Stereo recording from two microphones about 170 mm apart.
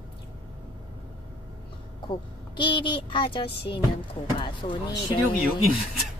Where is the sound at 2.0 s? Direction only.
30° left (ahead or behind).